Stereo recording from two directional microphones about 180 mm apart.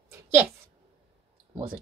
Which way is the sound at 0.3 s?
10° right (ahead or behind).